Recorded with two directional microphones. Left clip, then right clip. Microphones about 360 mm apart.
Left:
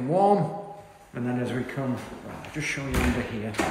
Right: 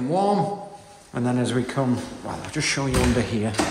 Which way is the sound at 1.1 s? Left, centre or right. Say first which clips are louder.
Right 6 dB; centre.